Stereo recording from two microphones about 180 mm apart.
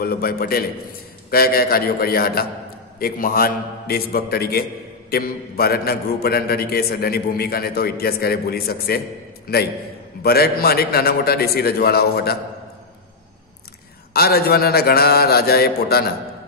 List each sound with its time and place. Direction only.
0.0 s a man's voice: 55° left (ahead or behind)
10.2 s a man's voice: 60° left (ahead or behind)
14.1 s a man's voice: 60° left (ahead or behind)